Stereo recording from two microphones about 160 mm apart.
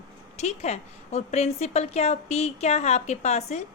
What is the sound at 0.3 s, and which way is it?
A woman's voice, 45° left (ahead or behind).